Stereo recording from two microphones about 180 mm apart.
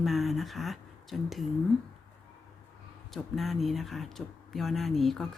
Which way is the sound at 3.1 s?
Centre (ahead or behind).